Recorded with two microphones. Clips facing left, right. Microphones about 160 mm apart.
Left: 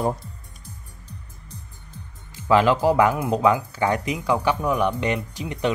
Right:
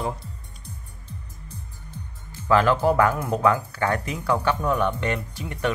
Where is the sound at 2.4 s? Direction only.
15° left (ahead or behind).